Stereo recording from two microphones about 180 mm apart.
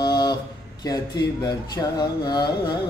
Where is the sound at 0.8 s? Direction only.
20° left (ahead or behind).